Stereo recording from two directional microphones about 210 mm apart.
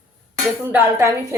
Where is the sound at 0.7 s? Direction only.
10° right (ahead or behind).